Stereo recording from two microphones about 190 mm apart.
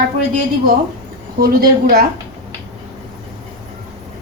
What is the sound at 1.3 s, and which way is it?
Speech, 50° right (ahead or behind).